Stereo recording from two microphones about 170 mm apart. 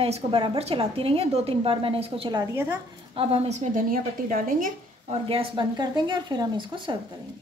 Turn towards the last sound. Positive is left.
turn(degrees=-30)  # may be behind; listen again after turning